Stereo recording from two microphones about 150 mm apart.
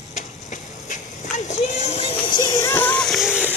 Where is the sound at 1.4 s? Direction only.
50° left (ahead or behind).